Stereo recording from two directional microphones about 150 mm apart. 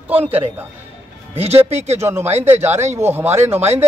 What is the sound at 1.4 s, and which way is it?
Speech, 45° right (ahead or behind).